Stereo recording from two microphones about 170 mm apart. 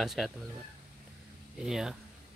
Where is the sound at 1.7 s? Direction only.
5° right (ahead or behind).